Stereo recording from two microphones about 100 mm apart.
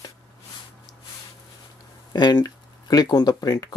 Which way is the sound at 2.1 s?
45° left (ahead or behind).